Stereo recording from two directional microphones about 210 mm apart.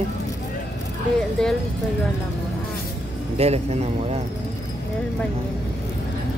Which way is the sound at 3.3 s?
30° right (ahead or behind).